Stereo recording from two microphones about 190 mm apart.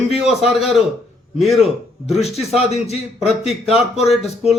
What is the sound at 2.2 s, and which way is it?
Speech, 35° left (ahead or behind).